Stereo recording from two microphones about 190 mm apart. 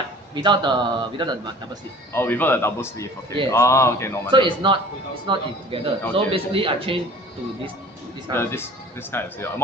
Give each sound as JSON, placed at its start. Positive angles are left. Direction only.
{"t": 0.3, "sound": "a man's voice", "side_deg": -25}
{"t": 2.1, "sound": "a man's voice", "side_deg": 10}
{"t": 4.3, "sound": "a man's voice", "side_deg": -25}
{"t": 8.3, "sound": "a man's voice", "side_deg": 10}